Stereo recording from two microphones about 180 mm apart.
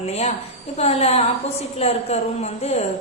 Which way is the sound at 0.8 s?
35° left (ahead or behind).